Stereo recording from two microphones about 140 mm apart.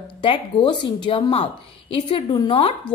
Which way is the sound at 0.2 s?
35° left (ahead or behind).